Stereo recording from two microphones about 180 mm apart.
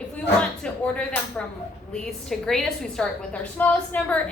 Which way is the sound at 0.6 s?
5° left (ahead or behind).